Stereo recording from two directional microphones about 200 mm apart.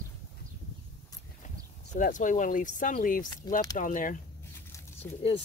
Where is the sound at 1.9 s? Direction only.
40° left (ahead or behind).